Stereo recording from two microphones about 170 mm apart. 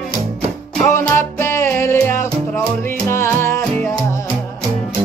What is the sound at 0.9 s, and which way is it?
Music, 15° left (ahead or behind).